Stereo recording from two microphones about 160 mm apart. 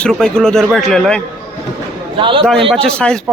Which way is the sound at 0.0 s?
5° left (ahead or behind).